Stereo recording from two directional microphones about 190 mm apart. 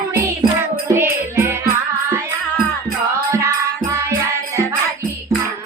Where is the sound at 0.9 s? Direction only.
15° right (ahead or behind).